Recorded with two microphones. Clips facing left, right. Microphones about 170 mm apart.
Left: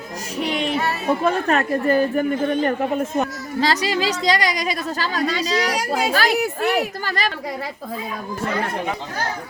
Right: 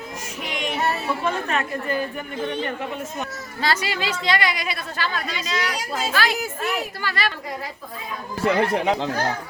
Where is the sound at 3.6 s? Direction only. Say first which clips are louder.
Left 4 dB; 35° left (ahead or behind).